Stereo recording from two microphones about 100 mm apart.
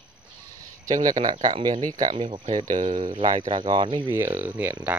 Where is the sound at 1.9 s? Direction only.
40° right (ahead or behind).